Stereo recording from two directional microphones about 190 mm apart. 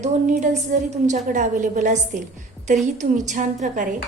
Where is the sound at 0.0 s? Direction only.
40° right (ahead or behind).